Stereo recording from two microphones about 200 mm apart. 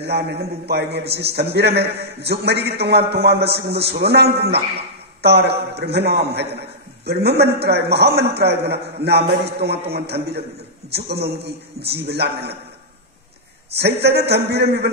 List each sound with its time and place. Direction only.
0.0 s a man's voice: 55° right (ahead or behind)
13.7 s a man's voice: 55° right (ahead or behind)